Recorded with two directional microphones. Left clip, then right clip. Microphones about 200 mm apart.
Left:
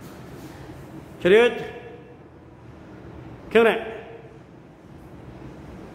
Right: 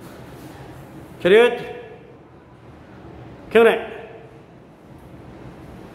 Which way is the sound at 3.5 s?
5° right (ahead or behind).